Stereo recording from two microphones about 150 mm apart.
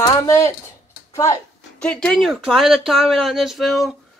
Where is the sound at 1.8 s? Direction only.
5° left (ahead or behind).